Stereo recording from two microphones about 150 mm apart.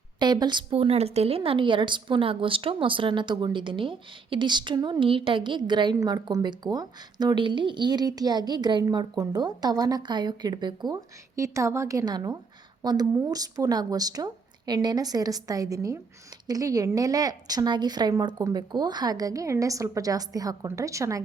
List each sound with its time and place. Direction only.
0.2 s a woman's voice: 30° right (ahead or behind)